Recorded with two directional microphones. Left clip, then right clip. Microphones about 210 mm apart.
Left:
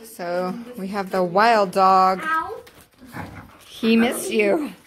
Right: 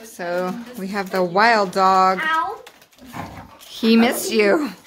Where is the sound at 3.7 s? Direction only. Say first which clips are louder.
Right 3 dB; 10° right (ahead or behind).